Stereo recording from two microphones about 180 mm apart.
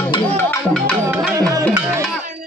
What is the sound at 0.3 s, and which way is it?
Music, 10° left (ahead or behind).